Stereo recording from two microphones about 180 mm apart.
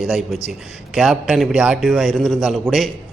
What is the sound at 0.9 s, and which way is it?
A man's voice, centre (ahead or behind).